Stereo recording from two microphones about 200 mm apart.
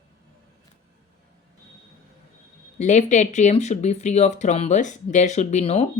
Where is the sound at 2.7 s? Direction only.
35° left (ahead or behind).